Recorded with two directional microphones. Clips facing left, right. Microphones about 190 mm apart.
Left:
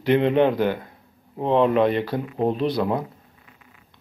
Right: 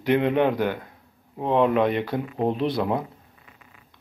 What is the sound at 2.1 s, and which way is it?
Speech, 5° right (ahead or behind).